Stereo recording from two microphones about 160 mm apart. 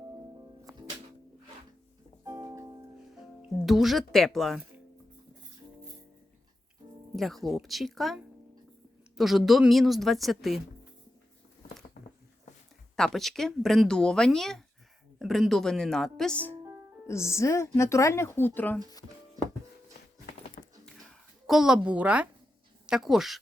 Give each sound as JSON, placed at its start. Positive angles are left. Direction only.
{"t": 0.6, "sound": "music", "side_deg": -25}
{"t": 2.2, "sound": "music", "side_deg": -20}
{"t": 3.7, "sound": "speech", "side_deg": 0}
{"t": 7.2, "sound": "speech", "side_deg": 0}
{"t": 12.0, "sound": "a sound", "side_deg": 55}
{"t": 13.0, "sound": "speech", "side_deg": 0}
{"t": 20.6, "sound": "a sound", "side_deg": 60}
{"t": 21.4, "sound": "a woman's voice", "side_deg": -5}